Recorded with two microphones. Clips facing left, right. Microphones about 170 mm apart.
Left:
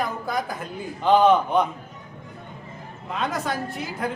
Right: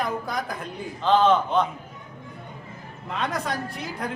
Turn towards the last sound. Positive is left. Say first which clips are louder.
# left 3 dB
turn(degrees=0)  # may be behind; listen again after turning